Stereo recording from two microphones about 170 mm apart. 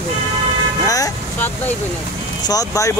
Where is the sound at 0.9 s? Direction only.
20° left (ahead or behind).